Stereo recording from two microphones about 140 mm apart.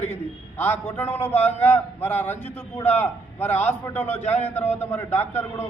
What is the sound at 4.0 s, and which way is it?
Speech, 55° left (ahead or behind).